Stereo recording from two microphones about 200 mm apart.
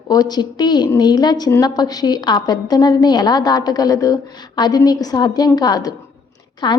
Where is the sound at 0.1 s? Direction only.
20° left (ahead or behind).